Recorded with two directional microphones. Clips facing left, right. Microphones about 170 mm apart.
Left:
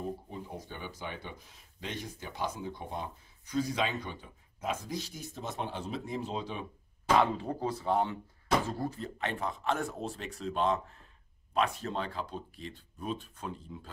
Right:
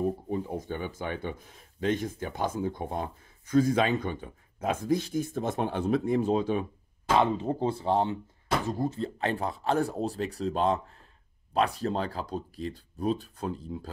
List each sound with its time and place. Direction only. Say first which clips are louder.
0.3 s speech: right 10 dB; 50° right (ahead or behind)
7.2 s speech: right 5 dB; 20° right (ahead or behind)